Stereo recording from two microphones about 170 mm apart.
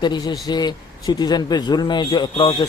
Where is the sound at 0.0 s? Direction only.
25° left (ahead or behind).